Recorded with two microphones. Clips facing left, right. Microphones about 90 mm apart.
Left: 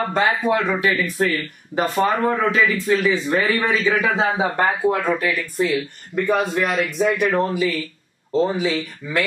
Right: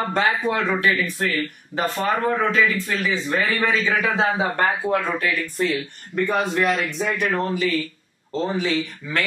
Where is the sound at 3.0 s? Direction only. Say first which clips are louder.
Left 3 dB; 10° left (ahead or behind).